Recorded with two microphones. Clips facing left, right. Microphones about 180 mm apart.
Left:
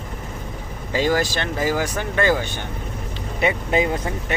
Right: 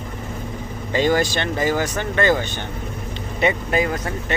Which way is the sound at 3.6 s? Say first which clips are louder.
Left 1 dB; 20° left (ahead or behind).